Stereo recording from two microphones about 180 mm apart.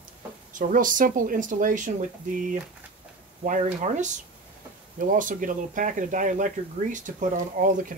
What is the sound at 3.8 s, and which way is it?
Speech, 40° right (ahead or behind).